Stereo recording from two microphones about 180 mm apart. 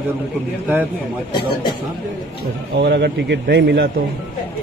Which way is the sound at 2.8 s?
70° right (ahead or behind).